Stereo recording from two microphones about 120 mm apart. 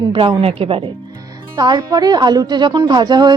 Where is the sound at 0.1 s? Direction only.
45° right (ahead or behind).